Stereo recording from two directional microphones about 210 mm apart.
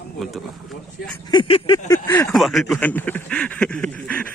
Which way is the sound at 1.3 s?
25° left (ahead or behind).